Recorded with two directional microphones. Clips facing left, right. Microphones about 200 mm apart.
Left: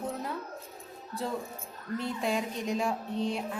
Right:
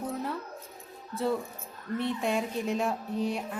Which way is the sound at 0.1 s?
Centre (ahead or behind).